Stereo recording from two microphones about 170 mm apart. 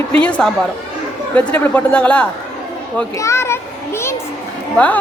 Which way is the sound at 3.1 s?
15° left (ahead or behind).